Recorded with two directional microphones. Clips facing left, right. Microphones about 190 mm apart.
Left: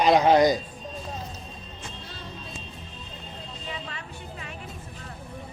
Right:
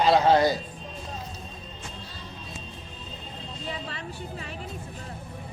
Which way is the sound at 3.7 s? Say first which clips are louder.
Right 3 dB; 35° right (ahead or behind).